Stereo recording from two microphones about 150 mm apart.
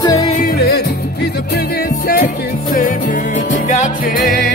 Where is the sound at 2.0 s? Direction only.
70° left (ahead or behind); by 4.2 s 55° left (ahead or behind).